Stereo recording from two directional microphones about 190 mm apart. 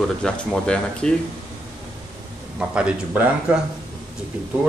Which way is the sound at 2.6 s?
5° right (ahead or behind).